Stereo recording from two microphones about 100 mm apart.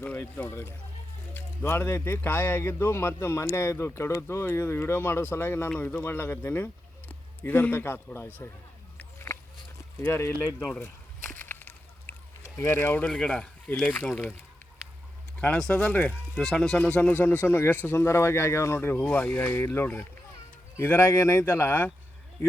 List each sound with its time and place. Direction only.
0.0 s speech: 15° left (ahead or behind)
5.7 s speech: 10° left (ahead or behind)
6.0 s a man's voice: 25° left (ahead or behind)
9.0 s a sound: 25° left (ahead or behind)
10.0 s speech: 25° left (ahead or behind)
10.8 s slosh: 20° left (ahead or behind)
13.1 s speech: 10° left (ahead or behind)
15.4 s speech: 10° left (ahead or behind)
16.4 s speech: 5° left (ahead or behind); by 21.8 s 25° left (ahead or behind)